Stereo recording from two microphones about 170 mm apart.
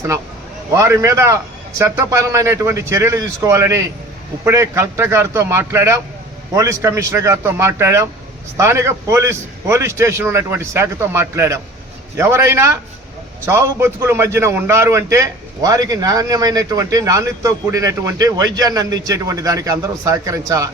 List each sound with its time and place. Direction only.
0.7 s a man's voice: 15° right (ahead or behind)